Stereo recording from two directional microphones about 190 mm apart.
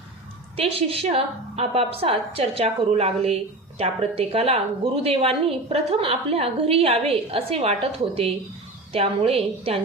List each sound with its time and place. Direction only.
0.5 s a woman's voice: 30° right (ahead or behind)